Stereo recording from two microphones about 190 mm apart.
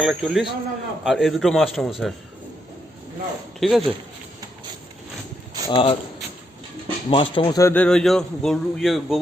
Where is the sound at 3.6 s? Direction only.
Centre (ahead or behind).